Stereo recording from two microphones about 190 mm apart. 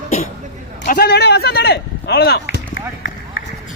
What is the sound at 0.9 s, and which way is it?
Speech, 55° left (ahead or behind).